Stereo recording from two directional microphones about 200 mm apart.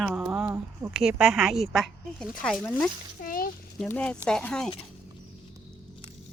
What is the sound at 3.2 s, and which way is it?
Speech, 45° left (ahead or behind).